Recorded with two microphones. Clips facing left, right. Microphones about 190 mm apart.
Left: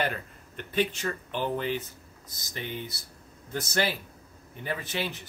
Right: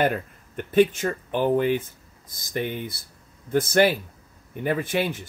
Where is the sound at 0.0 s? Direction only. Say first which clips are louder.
Right 8 dB; 50° right (ahead or behind).